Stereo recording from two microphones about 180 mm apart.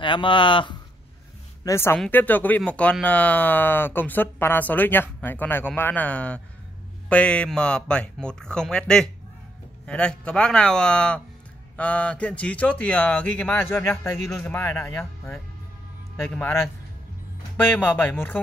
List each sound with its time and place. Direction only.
0.0 s speech: 25° left (ahead or behind)
1.6 s a woman's voice: 15° left (ahead or behind)